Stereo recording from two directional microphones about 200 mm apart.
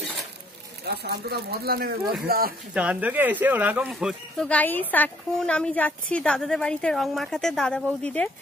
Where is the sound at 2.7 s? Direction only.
5° right (ahead or behind).